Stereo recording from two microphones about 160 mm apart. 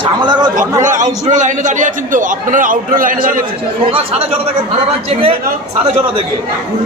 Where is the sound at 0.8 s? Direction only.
50° right (ahead or behind).